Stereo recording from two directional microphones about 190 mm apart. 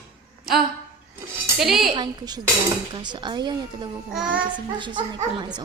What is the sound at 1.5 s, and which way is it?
Speech, centre (ahead or behind).